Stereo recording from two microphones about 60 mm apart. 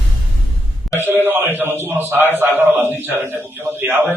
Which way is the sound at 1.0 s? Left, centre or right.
Right.